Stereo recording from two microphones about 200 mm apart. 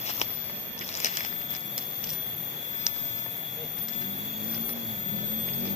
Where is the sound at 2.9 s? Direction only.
5° right (ahead or behind).